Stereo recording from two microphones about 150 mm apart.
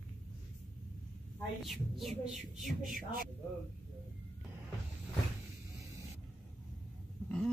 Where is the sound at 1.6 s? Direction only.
Centre (ahead or behind).